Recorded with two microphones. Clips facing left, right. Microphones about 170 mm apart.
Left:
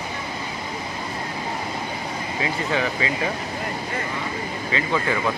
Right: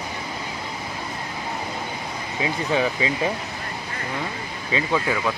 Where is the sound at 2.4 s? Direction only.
15° right (ahead or behind).